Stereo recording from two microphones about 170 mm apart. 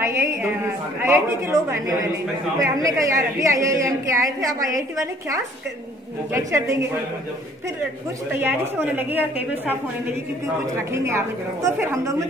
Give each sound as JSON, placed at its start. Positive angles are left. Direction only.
{"t": 0.0, "sound": "a woman's voice", "side_deg": -15}
{"t": 8.3, "sound": "a woman's voice", "side_deg": -10}
{"t": 10.9, "sound": "a woman's voice", "side_deg": -15}